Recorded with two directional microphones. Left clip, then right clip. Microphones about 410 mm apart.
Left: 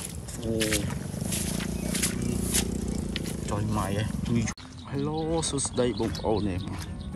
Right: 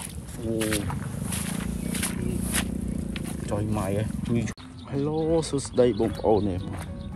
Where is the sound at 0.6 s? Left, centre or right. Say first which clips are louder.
Even; centre.